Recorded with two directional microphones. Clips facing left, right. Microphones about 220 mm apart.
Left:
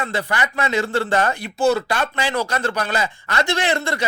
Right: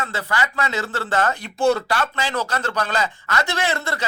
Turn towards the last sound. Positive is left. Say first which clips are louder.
# left 3 dB
turn(degrees=15)  # may be behind; listen again after turning